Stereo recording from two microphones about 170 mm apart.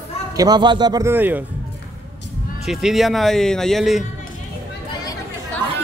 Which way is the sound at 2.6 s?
Centre (ahead or behind).